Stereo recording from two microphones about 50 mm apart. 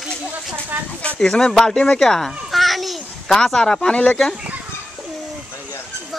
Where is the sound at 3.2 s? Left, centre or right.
Centre.